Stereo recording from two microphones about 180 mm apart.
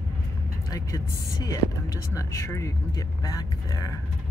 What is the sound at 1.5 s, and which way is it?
Speech, 20° left (ahead or behind).